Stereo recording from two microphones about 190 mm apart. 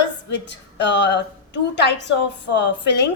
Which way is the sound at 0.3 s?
70° left (ahead or behind).